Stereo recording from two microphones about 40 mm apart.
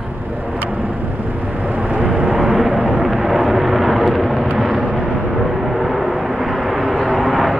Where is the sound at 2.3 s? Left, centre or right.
Centre.